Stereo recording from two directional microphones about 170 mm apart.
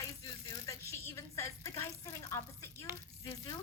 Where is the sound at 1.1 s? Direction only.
15° left (ahead or behind).